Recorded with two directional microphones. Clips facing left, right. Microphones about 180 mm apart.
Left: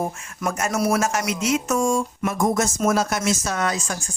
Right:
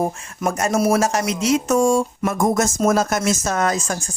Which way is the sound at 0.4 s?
30° right (ahead or behind).